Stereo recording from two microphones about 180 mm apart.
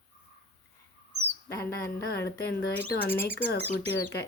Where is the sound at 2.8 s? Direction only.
10° left (ahead or behind).